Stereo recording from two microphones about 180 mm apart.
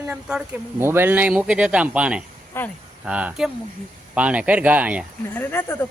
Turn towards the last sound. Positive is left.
turn(degrees=15)  # may be behind; listen again after turning